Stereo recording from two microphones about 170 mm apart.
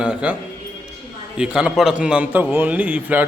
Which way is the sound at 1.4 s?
5° right (ahead or behind).